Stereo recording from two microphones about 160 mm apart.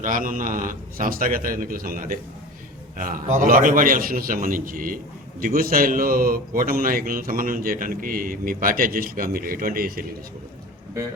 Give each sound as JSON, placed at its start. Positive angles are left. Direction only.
{"t": 0.0, "sound": "a man's voice", "side_deg": -60}